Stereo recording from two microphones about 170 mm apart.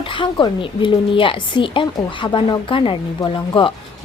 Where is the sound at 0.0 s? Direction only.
30° left (ahead or behind).